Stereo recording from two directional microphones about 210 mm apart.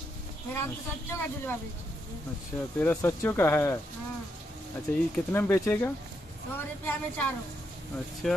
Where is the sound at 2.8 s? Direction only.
10° left (ahead or behind).